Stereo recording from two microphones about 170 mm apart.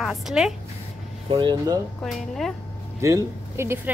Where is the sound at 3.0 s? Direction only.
15° right (ahead or behind).